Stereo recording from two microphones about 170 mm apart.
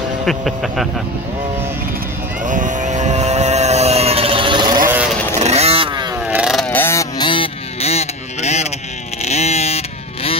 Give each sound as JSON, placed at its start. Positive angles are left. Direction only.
{"t": 0.2, "sound": "speech", "side_deg": 0}
{"t": 2.4, "sound": "vehicle", "side_deg": -50}
{"t": 4.8, "sound": "vehicle", "side_deg": -10}
{"t": 5.4, "sound": "vehicle", "side_deg": -40}
{"t": 6.2, "sound": "vehicle", "side_deg": -5}
{"t": 6.7, "sound": "a sound", "side_deg": 15}
{"t": 9.2, "sound": "vehicle", "side_deg": 40}